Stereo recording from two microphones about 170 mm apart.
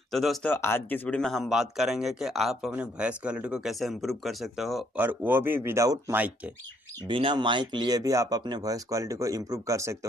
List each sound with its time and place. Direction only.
0.1 s speech: centre (ahead or behind)
0.5 s speech: 15° left (ahead or behind)
5.0 s speech: 10° right (ahead or behind)
7.1 s speech: 30° right (ahead or behind)